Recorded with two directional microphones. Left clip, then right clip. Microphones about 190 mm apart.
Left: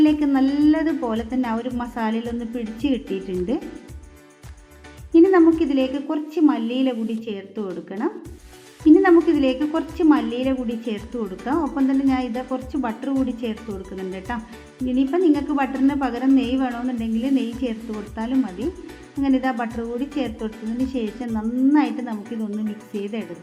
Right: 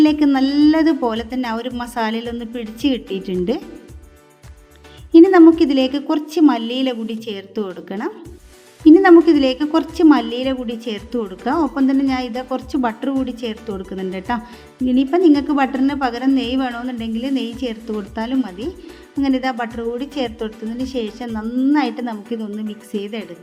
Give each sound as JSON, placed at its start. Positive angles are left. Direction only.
{"t": 0.0, "sound": "a woman's voice", "side_deg": -45}
{"t": 5.1, "sound": "a woman's voice", "side_deg": -45}